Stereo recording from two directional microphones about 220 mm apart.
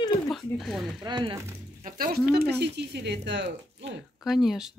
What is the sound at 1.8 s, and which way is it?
Speech, 40° right (ahead or behind).